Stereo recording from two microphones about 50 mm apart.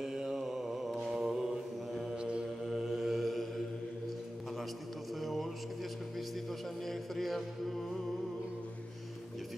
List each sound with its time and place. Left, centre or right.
0.0 s mantra: centre
2.1 s mantra: right
2.6 s mantra: centre
5.2 s a sound: centre
6.9 s music: centre